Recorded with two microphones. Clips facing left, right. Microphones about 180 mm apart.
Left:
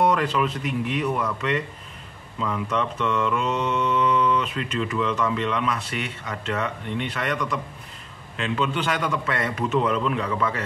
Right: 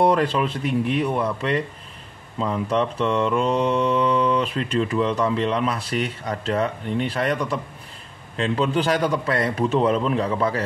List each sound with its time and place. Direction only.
0.0 s mantra: 30° right (ahead or behind)